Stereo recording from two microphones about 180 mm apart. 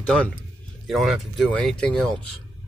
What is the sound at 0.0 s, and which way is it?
Speech, 5° left (ahead or behind).